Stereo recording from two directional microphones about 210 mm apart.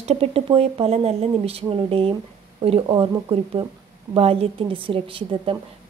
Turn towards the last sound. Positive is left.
turn(degrees=-25)  # may be behind; listen again after turning